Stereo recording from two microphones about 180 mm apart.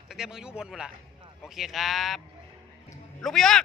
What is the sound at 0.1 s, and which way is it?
Speech, centre (ahead or behind).